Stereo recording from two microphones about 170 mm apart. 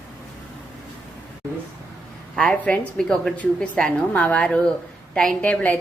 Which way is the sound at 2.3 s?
5° left (ahead or behind).